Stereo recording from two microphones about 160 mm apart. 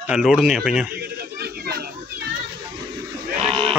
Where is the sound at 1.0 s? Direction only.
80° right.